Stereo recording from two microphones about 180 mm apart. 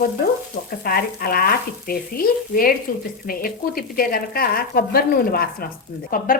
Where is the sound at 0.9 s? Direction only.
55° left (ahead or behind).